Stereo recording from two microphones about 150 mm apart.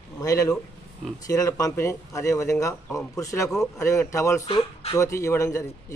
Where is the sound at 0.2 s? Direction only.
20° left (ahead or behind).